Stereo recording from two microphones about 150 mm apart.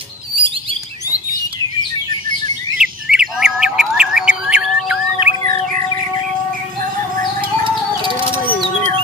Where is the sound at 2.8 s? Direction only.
5° right (ahead or behind).